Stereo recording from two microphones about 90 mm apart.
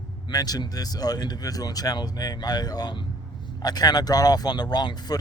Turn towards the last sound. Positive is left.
turn(degrees=50)  # may be behind; listen again after turning